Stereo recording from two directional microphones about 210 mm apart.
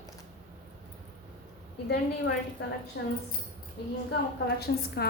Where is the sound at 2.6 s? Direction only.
50° left (ahead or behind).